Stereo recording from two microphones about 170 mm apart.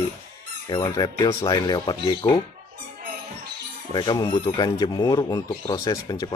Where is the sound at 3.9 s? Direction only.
25° left (ahead or behind).